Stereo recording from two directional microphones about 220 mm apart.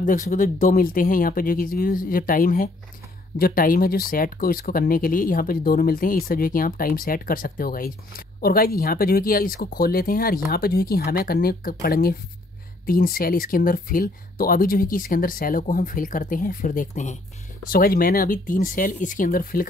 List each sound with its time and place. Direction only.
0.0 s speech: 35° left (ahead or behind)